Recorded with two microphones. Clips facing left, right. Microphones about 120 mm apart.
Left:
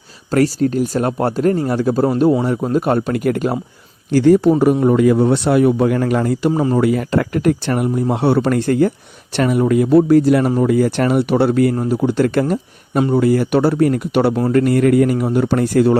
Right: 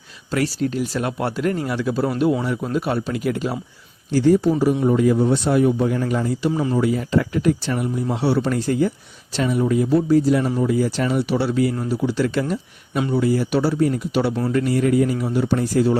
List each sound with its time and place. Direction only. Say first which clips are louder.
0.3 s speech: left 7 dB; 45° left (ahead or behind)
4.1 s a man's voice: left 5 dB; 70° left (ahead or behind)
4.5 s a man's voice: left 5 dB; 55° left (ahead or behind)
6.5 s speech: left 5 dB; 40° left (ahead or behind)
6.7 s speech: left 4 dB; 65° left (ahead or behind); by 13.1 s 45° left (ahead or behind)
13.1 s speech: left 4 dB; 60° left (ahead or behind)